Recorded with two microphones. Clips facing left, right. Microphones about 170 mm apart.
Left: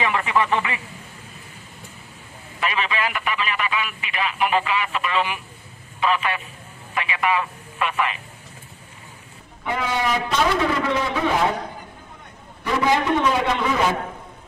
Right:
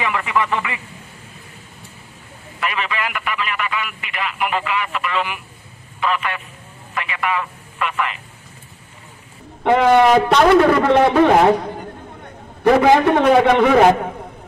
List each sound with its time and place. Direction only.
0.0 s speech: 25° left (ahead or behind)
2.6 s a man's voice: 20° left (ahead or behind)
9.6 s a man's voice: 65° right (ahead or behind)